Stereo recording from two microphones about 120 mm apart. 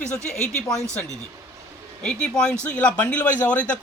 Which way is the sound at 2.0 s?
5° left (ahead or behind).